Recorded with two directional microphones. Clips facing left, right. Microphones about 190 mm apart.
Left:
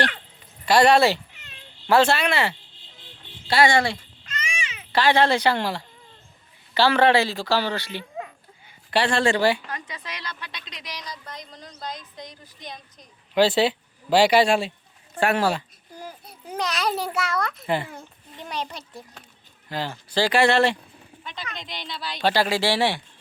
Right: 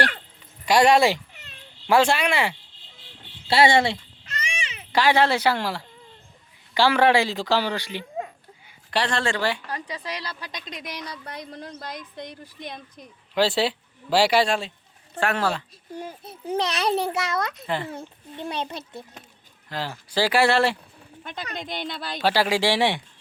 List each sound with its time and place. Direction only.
0.6 s speech: 10° right (ahead or behind)
3.5 s a child's voice: 25° right (ahead or behind)
4.9 s speech: 10° right (ahead or behind)
8.9 s speech: 5° left (ahead or behind)
9.6 s speech: 35° right (ahead or behind); by 13.1 s 55° right (ahead or behind)
13.3 s speech: centre (ahead or behind)
16.0 s a child's voice: 25° right (ahead or behind)
19.7 s speech: 5° right (ahead or behind)
21.2 s speech: 50° right (ahead or behind)
22.2 s speech: 10° right (ahead or behind)